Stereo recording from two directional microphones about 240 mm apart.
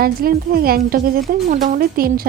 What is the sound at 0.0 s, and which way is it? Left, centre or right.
Speech, right.